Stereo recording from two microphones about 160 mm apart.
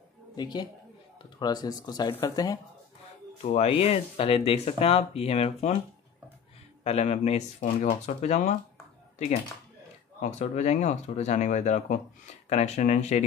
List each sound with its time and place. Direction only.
0.4 s speech: 25° left (ahead or behind)
3.4 s speech: 40° left (ahead or behind)
6.8 s speech: 40° left (ahead or behind)
10.4 s speech: 45° left (ahead or behind)